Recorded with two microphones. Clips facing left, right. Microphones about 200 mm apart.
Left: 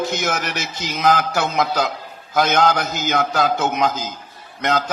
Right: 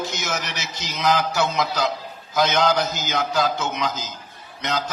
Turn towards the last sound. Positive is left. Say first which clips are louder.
# left 5 dB
turn(degrees=55)  # may be behind; listen again after turning